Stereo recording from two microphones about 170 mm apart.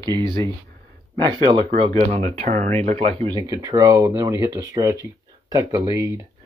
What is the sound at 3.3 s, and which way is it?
Speech, 20° right (ahead or behind).